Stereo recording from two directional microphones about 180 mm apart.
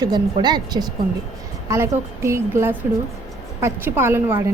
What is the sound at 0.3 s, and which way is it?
A woman's voice, 25° right (ahead or behind).